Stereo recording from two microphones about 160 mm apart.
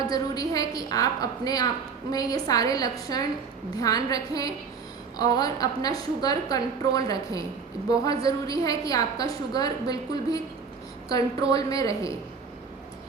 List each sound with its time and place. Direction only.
0.0 s a woman's voice: 20° left (ahead or behind)